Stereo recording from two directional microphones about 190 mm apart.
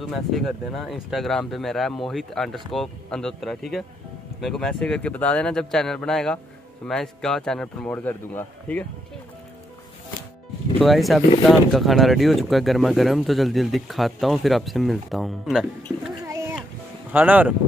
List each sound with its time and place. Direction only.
0.0 s speech: centre (ahead or behind)
10.8 s speech: centre (ahead or behind)
16.2 s a sound: 15° right (ahead or behind)
17.1 s speech: 10° right (ahead or behind)